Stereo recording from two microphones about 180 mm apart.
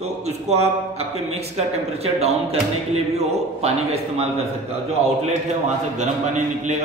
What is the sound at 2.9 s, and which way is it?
A man's voice, 35° right (ahead or behind).